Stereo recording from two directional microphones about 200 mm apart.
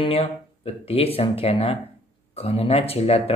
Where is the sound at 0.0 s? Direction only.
30° left (ahead or behind).